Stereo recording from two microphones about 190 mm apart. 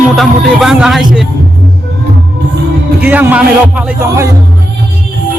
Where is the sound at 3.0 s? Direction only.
10° right (ahead or behind).